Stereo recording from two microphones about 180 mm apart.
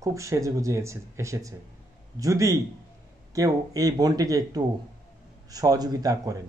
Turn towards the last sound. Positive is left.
turn(degrees=-20)  # may be behind; listen again after turning